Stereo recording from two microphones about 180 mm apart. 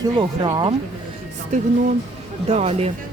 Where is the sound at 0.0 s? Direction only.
20° right (ahead or behind).